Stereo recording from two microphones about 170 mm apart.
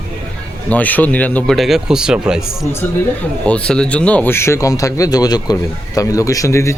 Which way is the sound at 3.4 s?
5° left (ahead or behind).